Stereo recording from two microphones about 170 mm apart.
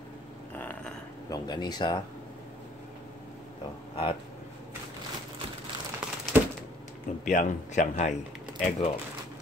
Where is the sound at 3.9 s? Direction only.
35° left (ahead or behind).